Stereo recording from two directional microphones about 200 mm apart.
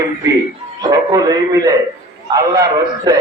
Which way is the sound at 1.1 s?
20° right (ahead or behind).